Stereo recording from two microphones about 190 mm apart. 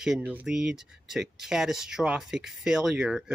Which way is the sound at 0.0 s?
5° right (ahead or behind).